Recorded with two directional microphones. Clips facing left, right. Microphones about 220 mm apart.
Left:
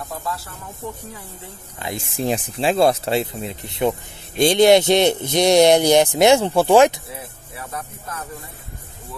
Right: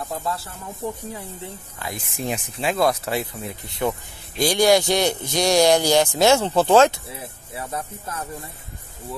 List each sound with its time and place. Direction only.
1.8 s speech: 25° left (ahead or behind)
7.2 s speech: 25° right (ahead or behind)